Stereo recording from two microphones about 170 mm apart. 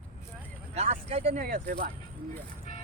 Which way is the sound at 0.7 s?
40° right (ahead or behind).